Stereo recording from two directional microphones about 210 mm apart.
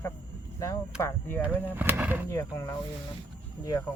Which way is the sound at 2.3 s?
15° left (ahead or behind).